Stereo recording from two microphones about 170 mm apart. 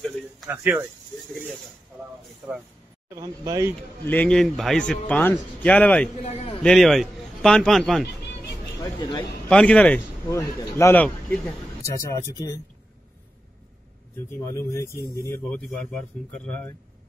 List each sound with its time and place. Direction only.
0.5 s speech: 10° right (ahead or behind)
3.2 s speech: 20° right (ahead or behind)
4.0 s a man's voice: 10° left (ahead or behind)
6.2 s a man's voice: 35° left (ahead or behind)
6.6 s a man's voice: centre (ahead or behind)
8.7 s speech: 20° left (ahead or behind)
9.5 s a man's voice: 5° left (ahead or behind)
14.1 s a man's voice: 15° left (ahead or behind)